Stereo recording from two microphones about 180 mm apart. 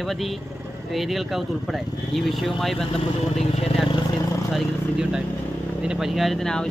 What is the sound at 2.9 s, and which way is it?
Speech, 35° left (ahead or behind).